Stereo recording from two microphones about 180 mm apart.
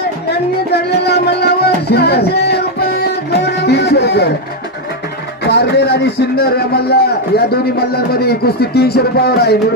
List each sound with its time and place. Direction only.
0.3 s music: 65° left (ahead or behind)
5.4 s a man's voice: 65° left (ahead or behind)